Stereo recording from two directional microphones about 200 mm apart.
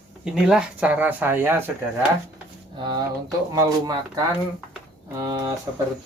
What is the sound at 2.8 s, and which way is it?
Speech, 20° right (ahead or behind).